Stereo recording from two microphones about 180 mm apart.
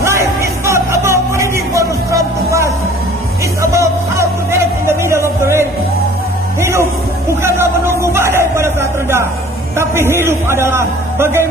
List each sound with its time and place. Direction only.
0.0 s music: 15° right (ahead or behind)
3.7 s music: 15° right (ahead or behind)
7.4 s a sound: 15° right (ahead or behind)
9.8 s a man's voice: 15° right (ahead or behind)